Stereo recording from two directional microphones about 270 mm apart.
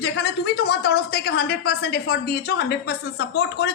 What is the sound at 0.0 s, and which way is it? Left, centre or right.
A man's voice, left.